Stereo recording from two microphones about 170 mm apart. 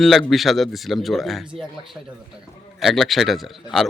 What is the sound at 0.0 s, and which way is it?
A man's voice, centre (ahead or behind).